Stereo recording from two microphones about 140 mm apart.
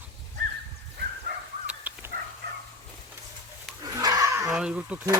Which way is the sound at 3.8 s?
25° right (ahead or behind).